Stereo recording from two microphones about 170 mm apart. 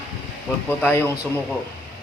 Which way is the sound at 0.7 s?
10° left (ahead or behind).